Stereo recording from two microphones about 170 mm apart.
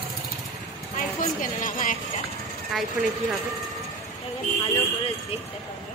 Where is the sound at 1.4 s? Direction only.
50° left (ahead or behind).